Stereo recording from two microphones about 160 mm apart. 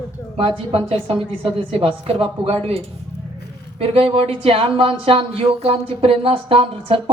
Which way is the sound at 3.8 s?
35° right (ahead or behind).